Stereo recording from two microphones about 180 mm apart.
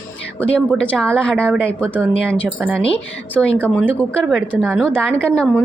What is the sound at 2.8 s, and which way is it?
A woman's voice, 5° left (ahead or behind).